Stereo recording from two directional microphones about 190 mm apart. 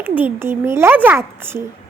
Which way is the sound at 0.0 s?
10° right (ahead or behind).